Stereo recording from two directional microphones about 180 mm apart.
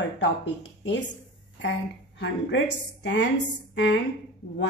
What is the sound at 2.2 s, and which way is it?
A woman's voice, 80° left.